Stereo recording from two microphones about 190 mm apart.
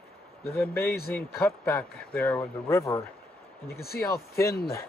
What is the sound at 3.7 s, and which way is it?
Speech, 55° left (ahead or behind).